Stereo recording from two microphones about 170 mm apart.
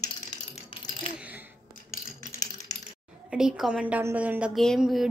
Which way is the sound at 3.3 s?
5° right (ahead or behind).